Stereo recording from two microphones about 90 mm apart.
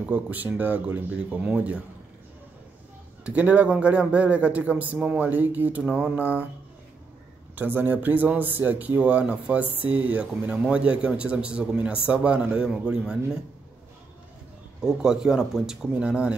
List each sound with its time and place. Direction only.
0.0 s a man's voice: 15° right (ahead or behind)
3.3 s a man's voice: 15° right (ahead or behind)
7.5 s a man's voice: 20° right (ahead or behind)
14.8 s a man's voice: 5° right (ahead or behind)